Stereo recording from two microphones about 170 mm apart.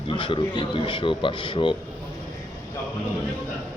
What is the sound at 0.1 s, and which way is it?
A man's voice, 30° left (ahead or behind).